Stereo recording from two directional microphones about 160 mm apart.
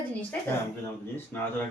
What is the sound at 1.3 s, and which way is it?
Speech, 10° left (ahead or behind).